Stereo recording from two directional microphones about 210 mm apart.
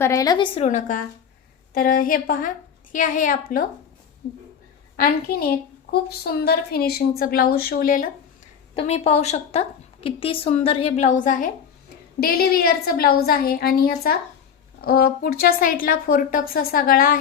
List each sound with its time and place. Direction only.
0.0 s a woman's voice: 15° left (ahead or behind); by 8.1 s 40° left (ahead or behind)
8.7 s a woman's voice: 30° left (ahead or behind)